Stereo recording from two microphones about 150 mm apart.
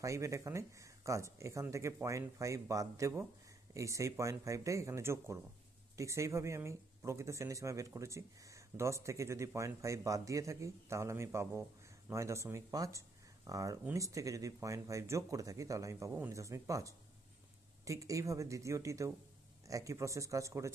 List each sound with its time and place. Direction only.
0.0 s speech: 20° right (ahead or behind)